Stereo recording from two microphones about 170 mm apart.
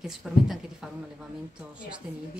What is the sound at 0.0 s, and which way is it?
Speech, centre (ahead or behind).